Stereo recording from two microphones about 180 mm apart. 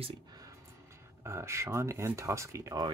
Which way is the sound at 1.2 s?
15° right (ahead or behind).